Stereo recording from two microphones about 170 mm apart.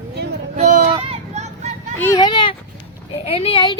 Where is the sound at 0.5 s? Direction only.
45° right (ahead or behind).